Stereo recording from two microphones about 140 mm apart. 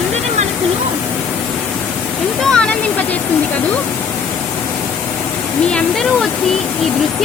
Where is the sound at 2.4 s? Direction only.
5° left (ahead or behind).